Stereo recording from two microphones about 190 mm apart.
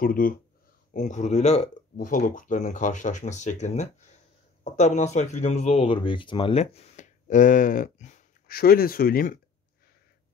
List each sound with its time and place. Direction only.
0.0 s speech: 50° left (ahead or behind)
0.9 s speech: 40° left (ahead or behind)